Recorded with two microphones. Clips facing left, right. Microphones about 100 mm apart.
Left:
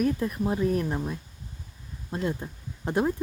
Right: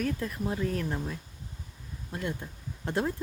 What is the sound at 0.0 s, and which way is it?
Speech, 20° left (ahead or behind).